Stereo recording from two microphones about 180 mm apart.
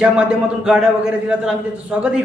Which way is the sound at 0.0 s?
5° right (ahead or behind).